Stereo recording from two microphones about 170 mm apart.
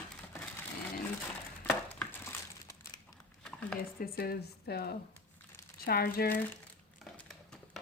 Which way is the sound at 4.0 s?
65° left (ahead or behind).